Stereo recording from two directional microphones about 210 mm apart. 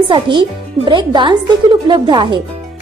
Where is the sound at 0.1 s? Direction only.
20° right (ahead or behind).